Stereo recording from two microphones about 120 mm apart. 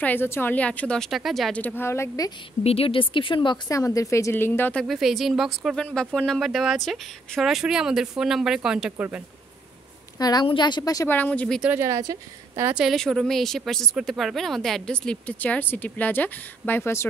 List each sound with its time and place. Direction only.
0.0 s a woman's voice: 15° left (ahead or behind); by 1.6 s centre (ahead or behind)
1.6 s a woman's voice: 15° left (ahead or behind)
2.6 s a woman's voice: 55° left (ahead or behind)
3.7 s a woman's voice: 25° left (ahead or behind)
4.8 s speech: centre (ahead or behind)
10.1 s a woman's voice: 30° left (ahead or behind)
11.1 s a woman's voice: 15° left (ahead or behind)
11.8 s speech: 30° right (ahead or behind)
12.7 s speech: centre (ahead or behind); by 17.1 s 20° left (ahead or behind)